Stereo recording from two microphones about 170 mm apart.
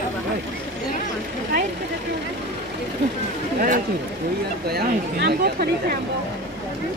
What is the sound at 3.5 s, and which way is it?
Speech, 55° right (ahead or behind).